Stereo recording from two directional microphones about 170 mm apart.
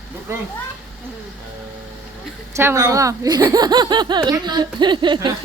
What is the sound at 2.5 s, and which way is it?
Speech, 15° right (ahead or behind).